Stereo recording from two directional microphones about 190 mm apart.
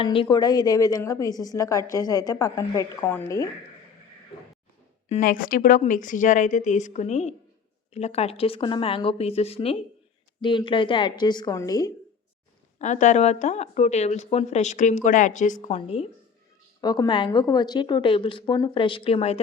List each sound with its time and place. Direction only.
0.0 s a woman's voice: 25° left (ahead or behind)
5.0 s a woman's voice: 40° left (ahead or behind); by 11.9 s 15° left (ahead or behind)
12.8 s speech: 40° left (ahead or behind)
15.6 s a woman's voice: 30° left (ahead or behind)